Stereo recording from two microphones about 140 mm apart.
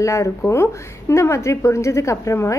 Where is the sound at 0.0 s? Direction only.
20° left (ahead or behind).